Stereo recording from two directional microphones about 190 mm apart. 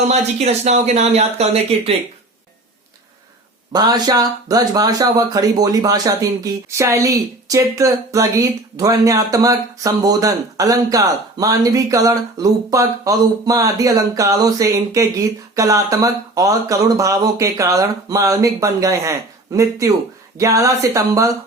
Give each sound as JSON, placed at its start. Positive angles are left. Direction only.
{"t": 0.1, "sound": "speech", "side_deg": -35}
{"t": 3.7, "sound": "speech", "side_deg": -20}